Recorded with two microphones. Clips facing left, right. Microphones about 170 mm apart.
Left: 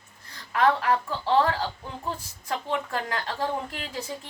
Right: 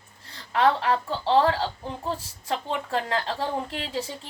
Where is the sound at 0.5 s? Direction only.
30° right (ahead or behind).